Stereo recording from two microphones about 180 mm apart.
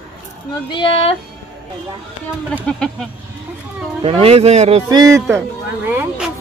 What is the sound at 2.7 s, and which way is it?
Speech, 5° left (ahead or behind).